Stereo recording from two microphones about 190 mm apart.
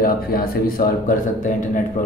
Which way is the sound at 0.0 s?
50° left (ahead or behind).